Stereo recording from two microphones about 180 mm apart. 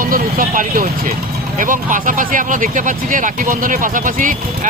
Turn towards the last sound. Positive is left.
turn(degrees=-45)  # may be behind; listen again after turning